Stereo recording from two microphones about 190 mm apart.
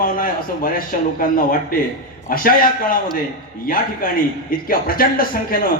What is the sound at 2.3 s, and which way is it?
A man's voice, 50° left (ahead or behind).